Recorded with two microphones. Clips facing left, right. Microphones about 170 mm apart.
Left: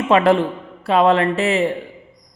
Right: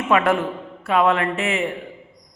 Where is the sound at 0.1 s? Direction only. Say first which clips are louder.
Left 4 dB; 30° left (ahead or behind).